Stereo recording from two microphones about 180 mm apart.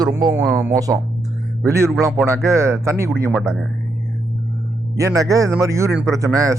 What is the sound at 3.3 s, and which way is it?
Speech, centre (ahead or behind).